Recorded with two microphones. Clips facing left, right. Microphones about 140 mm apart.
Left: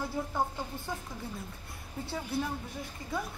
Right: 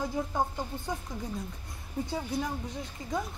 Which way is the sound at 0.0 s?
15° right (ahead or behind).